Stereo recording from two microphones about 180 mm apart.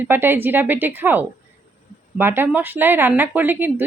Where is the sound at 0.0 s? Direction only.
10° right (ahead or behind).